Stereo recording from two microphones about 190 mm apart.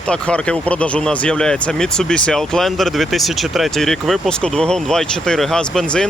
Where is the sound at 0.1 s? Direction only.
5° left (ahead or behind).